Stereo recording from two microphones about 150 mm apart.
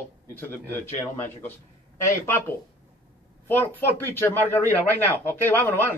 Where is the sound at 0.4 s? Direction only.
15° left (ahead or behind).